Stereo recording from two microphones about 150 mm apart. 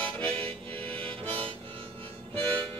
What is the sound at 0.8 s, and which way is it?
Harmonica, 10° left (ahead or behind).